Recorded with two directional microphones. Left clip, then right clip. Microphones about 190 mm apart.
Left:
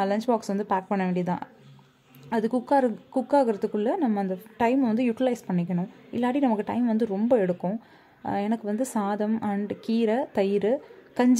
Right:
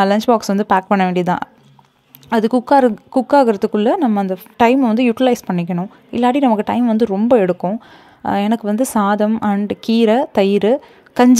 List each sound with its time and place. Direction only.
0.0 s a woman's voice: 25° right (ahead or behind)